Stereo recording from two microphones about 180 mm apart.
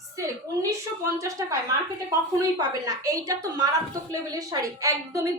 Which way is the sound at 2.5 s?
20° right (ahead or behind).